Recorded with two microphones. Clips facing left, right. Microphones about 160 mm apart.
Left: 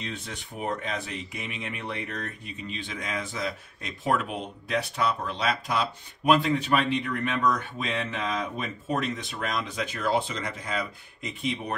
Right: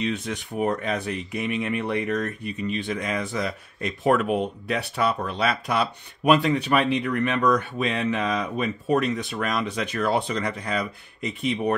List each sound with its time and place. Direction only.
0.0 s speech: 65° right (ahead or behind)